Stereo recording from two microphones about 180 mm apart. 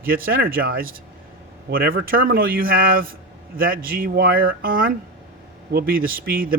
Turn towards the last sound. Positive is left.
turn(degrees=-55)  # may be behind; listen again after turning